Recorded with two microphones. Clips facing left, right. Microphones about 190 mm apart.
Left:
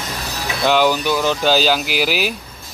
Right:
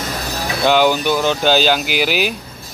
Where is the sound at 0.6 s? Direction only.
Centre (ahead or behind).